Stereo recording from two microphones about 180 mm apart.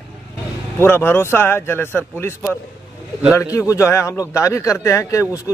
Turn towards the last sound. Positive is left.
turn(degrees=20)  # may be behind; listen again after turning